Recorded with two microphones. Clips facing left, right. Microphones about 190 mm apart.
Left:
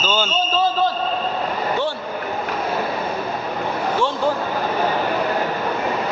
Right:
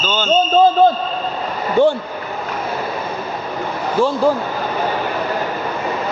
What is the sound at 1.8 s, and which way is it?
Speech, 50° right (ahead or behind).